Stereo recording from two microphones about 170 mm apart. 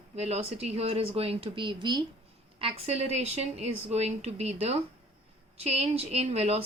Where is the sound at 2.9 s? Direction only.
40° right (ahead or behind).